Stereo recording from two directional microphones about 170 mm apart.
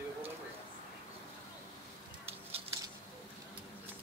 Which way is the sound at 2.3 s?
35° right (ahead or behind).